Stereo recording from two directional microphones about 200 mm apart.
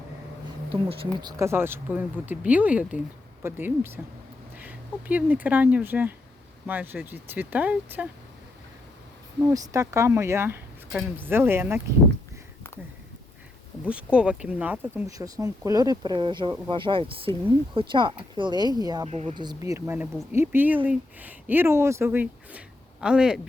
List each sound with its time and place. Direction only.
0.7 s speech: 25° right (ahead or behind); by 8.0 s 10° right (ahead or behind)
9.4 s speech: 15° right (ahead or behind)
13.8 s speech: 5° right (ahead or behind)
19.0 s speech: 30° right (ahead or behind); by 23.4 s 5° right (ahead or behind)